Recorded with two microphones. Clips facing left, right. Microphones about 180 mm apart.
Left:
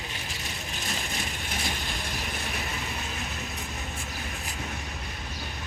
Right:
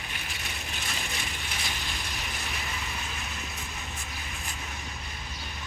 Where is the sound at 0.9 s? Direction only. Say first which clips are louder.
Left 4 dB; 45° left (ahead or behind).